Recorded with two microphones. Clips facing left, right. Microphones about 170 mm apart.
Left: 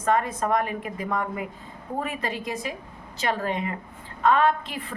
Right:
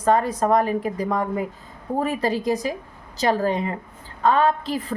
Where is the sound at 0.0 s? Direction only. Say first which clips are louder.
Right 4 dB; 35° right (ahead or behind).